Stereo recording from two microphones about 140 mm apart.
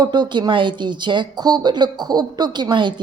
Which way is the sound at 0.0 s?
30° right (ahead or behind).